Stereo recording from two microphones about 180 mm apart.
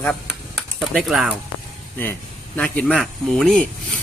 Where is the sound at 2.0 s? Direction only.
10° left (ahead or behind).